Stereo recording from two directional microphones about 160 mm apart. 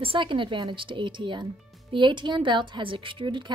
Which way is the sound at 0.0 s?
30° right (ahead or behind).